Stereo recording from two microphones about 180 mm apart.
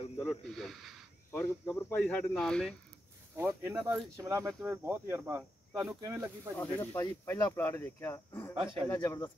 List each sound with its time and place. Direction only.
0.2 s speech: centre (ahead or behind)
1.4 s speech: 10° left (ahead or behind)
3.3 s speech: 10° right (ahead or behind)
5.9 s speech: 20° right (ahead or behind)
6.5 s speech: 10° left (ahead or behind)